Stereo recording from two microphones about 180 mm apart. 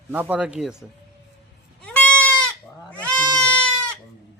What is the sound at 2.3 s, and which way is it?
Goat, 5° left (ahead or behind).